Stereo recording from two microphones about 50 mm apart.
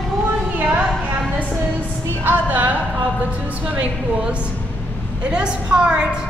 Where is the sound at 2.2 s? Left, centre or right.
Right.